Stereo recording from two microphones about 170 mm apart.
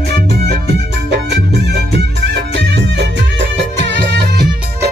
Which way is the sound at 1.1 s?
80° right.